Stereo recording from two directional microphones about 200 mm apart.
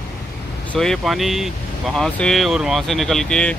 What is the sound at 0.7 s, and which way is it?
Speech, centre (ahead or behind).